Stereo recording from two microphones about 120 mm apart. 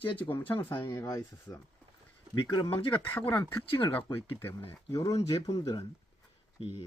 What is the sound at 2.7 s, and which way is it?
Speech, 50° left (ahead or behind).